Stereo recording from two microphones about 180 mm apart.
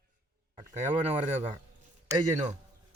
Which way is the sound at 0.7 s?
40° right (ahead or behind).